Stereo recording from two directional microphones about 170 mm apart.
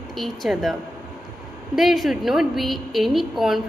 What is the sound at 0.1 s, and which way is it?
Speech, centre (ahead or behind).